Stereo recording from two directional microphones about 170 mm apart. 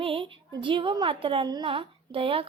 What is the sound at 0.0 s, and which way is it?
A woman's voice, 35° right (ahead or behind).